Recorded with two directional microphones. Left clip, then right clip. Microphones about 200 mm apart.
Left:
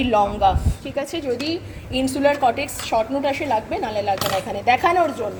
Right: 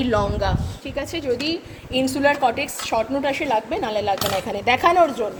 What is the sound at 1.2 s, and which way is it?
A woman's voice, 25° right (ahead or behind).